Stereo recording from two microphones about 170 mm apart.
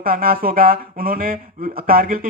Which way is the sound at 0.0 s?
60° right (ahead or behind).